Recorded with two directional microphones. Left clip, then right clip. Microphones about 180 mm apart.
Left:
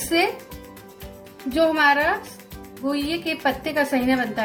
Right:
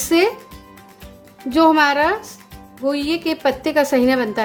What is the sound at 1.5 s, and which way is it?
A woman's voice, 65° right (ahead or behind).